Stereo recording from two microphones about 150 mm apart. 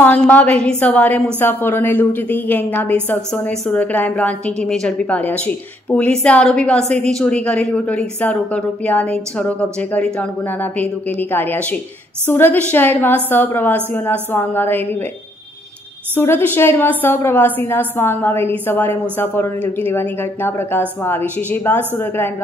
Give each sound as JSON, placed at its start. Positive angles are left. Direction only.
{"t": 0.0, "sound": "a woman's voice", "side_deg": 10}
{"t": 16.2, "sound": "a woman's voice", "side_deg": 15}